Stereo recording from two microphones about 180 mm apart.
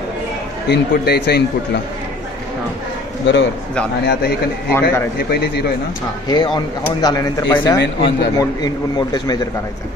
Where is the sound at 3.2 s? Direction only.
85° left.